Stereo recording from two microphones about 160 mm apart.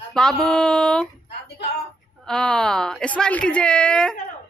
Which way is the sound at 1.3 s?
90° left.